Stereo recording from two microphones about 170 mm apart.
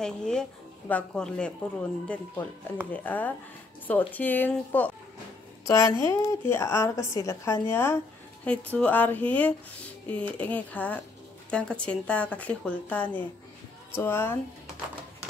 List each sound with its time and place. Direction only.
0.0 s a woman's voice: 5° left (ahead or behind)